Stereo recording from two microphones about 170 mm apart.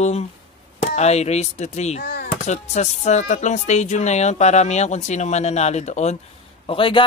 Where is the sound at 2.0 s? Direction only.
65° left (ahead or behind).